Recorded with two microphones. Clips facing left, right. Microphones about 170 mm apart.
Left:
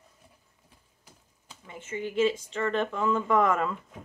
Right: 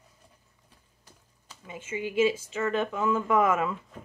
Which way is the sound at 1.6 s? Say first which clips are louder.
Right 1 dB; 10° right (ahead or behind).